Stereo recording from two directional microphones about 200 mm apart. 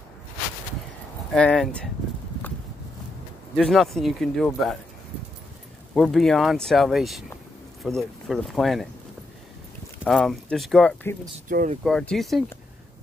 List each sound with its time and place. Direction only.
1.3 s speech: 5° left (ahead or behind)
3.5 s speech: centre (ahead or behind)
5.9 s speech: centre (ahead or behind)
10.0 s speech: centre (ahead or behind)
11.3 s speech: 40° right (ahead or behind)
11.8 s speech: 5° left (ahead or behind)